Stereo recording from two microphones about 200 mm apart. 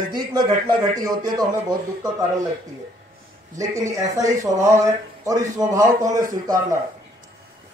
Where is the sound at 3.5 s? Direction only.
15° right (ahead or behind).